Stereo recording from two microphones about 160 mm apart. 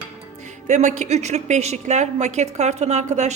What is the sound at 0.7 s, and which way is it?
A woman's voice, 50° right (ahead or behind).